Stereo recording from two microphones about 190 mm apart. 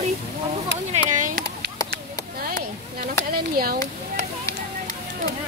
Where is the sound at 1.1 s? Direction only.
45° right (ahead or behind).